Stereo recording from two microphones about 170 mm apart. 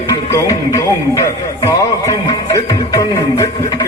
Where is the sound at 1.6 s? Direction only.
20° left (ahead or behind).